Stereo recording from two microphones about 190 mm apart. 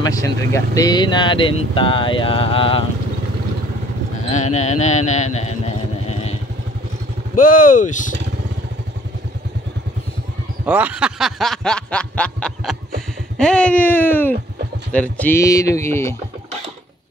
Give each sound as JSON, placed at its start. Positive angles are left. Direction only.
{"t": 0.0, "sound": "speech", "side_deg": 20}
{"t": 4.3, "sound": "speech", "side_deg": 35}
{"t": 7.3, "sound": "speech", "side_deg": 45}
{"t": 10.6, "sound": "snicker", "side_deg": -10}
{"t": 13.4, "sound": "speech", "side_deg": 5}